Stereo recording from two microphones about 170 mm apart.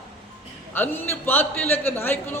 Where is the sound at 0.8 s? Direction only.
10° left (ahead or behind).